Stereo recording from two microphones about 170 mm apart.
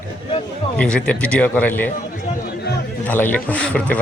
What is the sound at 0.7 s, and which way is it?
A man's voice, 5° left (ahead or behind).